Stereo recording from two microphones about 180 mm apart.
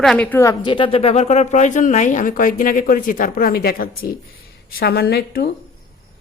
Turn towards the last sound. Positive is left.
turn(degrees=60)  # may be behind; listen again after turning